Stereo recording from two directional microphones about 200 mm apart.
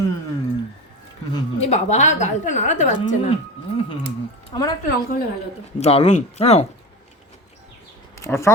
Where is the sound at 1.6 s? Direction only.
35° left (ahead or behind).